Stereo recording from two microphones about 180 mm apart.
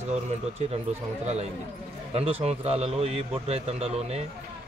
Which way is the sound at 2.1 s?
35° right (ahead or behind).